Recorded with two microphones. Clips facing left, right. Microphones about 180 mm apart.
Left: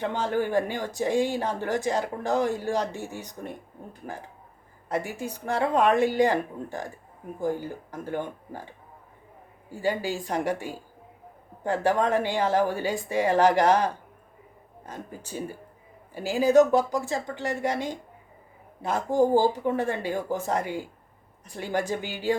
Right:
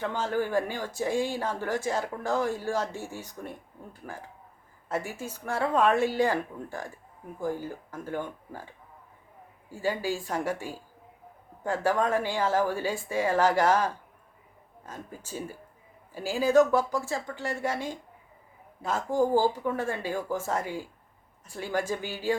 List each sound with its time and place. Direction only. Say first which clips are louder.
0.0 s speech: left 2 dB; 15° left (ahead or behind)
4.9 s speech: left 3 dB; 15° left (ahead or behind)
9.8 s speech: left 2 dB; 20° left (ahead or behind)
11.8 s speech: left 2 dB; 20° left (ahead or behind)